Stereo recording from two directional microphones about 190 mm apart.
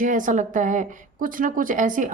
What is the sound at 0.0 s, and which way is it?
Speech, 45° right (ahead or behind).